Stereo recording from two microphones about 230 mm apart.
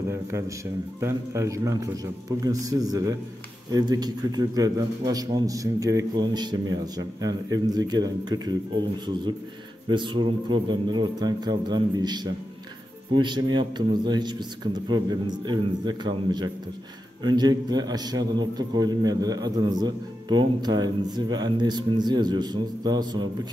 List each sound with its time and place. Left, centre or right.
0.1 s a man's voice: centre
9.8 s a man's voice: right